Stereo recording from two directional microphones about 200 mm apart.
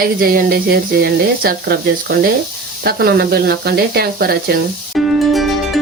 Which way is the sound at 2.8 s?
50° right (ahead or behind).